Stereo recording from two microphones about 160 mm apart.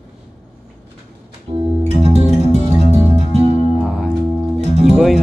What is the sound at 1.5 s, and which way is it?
Music, 40° right (ahead or behind).